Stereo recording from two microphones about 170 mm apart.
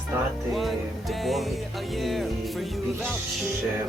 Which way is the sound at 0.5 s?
Centre (ahead or behind).